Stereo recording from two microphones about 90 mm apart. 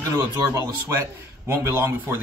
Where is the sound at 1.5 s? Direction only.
30° right (ahead or behind).